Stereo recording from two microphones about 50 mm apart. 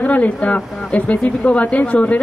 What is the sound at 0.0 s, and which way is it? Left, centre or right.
A man's voice, left.